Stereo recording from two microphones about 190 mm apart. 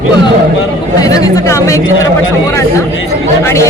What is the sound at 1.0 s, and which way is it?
Chatter, 20° left (ahead or behind).